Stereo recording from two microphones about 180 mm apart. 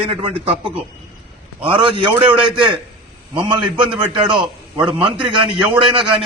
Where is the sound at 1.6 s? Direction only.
30° right (ahead or behind).